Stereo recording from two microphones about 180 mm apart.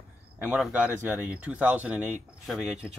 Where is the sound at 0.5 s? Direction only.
5° right (ahead or behind).